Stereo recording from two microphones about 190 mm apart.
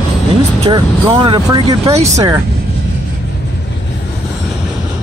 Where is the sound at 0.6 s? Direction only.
25° right (ahead or behind).